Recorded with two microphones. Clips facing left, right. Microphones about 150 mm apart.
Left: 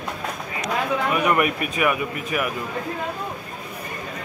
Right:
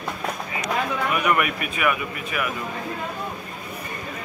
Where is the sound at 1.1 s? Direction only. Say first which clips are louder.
Left 2 dB; 30° left (ahead or behind).